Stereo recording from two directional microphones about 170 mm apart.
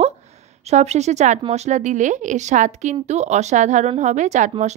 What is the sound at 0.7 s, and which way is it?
A woman's voice, 40° right (ahead or behind).